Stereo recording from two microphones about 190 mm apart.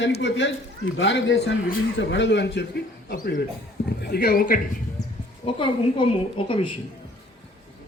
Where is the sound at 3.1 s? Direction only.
50° left (ahead or behind).